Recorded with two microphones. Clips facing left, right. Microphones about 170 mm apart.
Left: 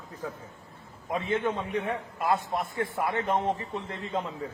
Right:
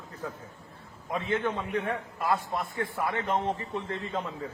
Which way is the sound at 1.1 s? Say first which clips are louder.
Left 1 dB; 20° left (ahead or behind).